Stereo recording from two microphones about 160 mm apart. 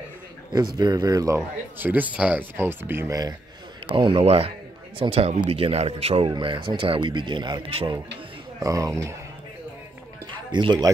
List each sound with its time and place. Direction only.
0.7 s speech: 25° right (ahead or behind)
3.8 s a man's voice: 30° right (ahead or behind)
8.5 s speech: 20° right (ahead or behind)
10.3 s speech: 30° right (ahead or behind)